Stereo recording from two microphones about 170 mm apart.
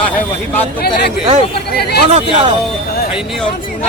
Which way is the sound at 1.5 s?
70° left (ahead or behind).